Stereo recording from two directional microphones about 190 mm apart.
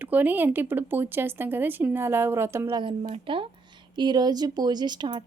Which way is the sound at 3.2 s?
25° right (ahead or behind).